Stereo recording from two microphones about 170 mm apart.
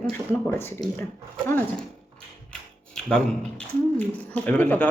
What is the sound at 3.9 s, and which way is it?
Speech, 10° left (ahead or behind).